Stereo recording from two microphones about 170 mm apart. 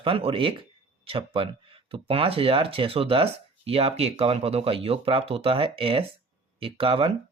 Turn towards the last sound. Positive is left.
turn(degrees=-35)  # may be behind; listen again after turning